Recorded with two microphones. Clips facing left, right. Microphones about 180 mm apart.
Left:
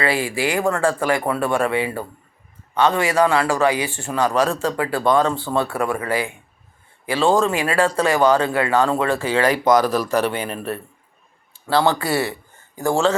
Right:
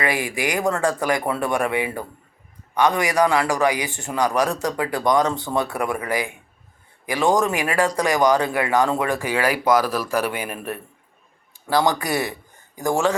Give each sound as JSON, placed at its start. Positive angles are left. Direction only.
{"t": 0.0, "sound": "speech", "side_deg": -15}
{"t": 11.9, "sound": "speech", "side_deg": -15}